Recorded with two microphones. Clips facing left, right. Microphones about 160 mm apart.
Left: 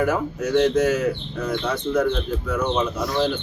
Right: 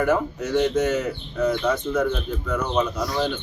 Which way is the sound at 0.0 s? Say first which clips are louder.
Even; 5° left (ahead or behind).